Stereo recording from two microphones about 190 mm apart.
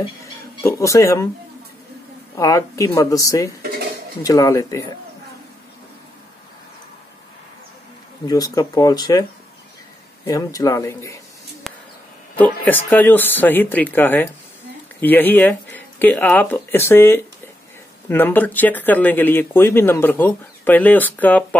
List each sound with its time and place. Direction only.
0.6 s speech: 15° left (ahead or behind)
2.3 s speech: 15° left (ahead or behind)
8.3 s speech: 20° left (ahead or behind)
10.2 s speech: 20° left (ahead or behind)
11.7 s a sound: centre (ahead or behind)
12.6 s speech: 10° left (ahead or behind)